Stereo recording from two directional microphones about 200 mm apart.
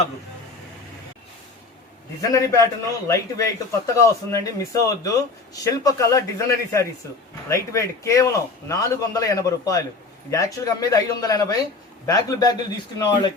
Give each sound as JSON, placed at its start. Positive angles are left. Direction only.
{"t": 2.3, "sound": "a man's voice", "side_deg": 15}